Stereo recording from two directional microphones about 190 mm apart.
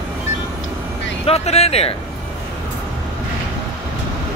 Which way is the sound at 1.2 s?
35° left (ahead or behind).